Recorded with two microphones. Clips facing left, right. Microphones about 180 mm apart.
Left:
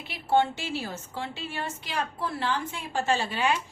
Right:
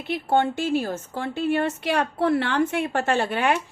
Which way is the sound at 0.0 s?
55° right (ahead or behind).